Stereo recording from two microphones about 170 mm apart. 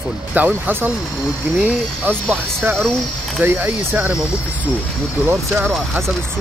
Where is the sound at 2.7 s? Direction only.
Centre (ahead or behind).